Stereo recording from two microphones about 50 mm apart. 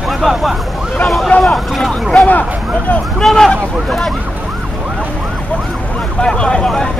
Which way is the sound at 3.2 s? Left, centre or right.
Centre.